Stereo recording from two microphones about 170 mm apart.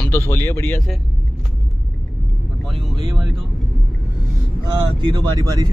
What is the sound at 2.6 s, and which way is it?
Speech, centre (ahead or behind).